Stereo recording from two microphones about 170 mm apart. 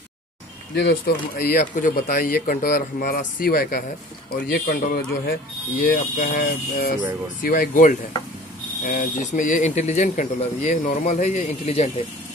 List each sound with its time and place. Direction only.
0.7 s speech: 75° left (ahead or behind)
1.3 s speech: 55° left (ahead or behind); by 7.0 s 75° left (ahead or behind)
7.4 s speech: 60° left (ahead or behind); by 11.9 s 40° left (ahead or behind)